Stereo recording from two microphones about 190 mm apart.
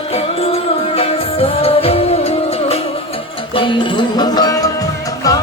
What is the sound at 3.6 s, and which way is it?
Music, 25° left (ahead or behind).